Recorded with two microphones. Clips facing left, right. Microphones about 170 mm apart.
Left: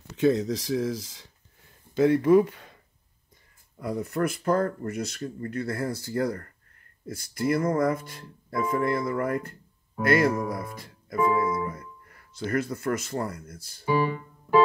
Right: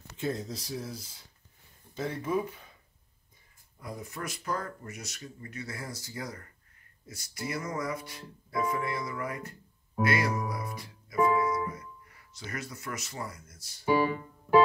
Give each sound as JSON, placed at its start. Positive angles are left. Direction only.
{"t": 0.2, "sound": "speech", "side_deg": 90}
{"t": 3.8, "sound": "speech", "side_deg": 65}
{"t": 7.1, "sound": "music", "side_deg": 55}
{"t": 10.0, "sound": "speech", "side_deg": 50}